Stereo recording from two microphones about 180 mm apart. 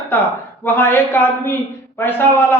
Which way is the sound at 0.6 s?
10° left (ahead or behind).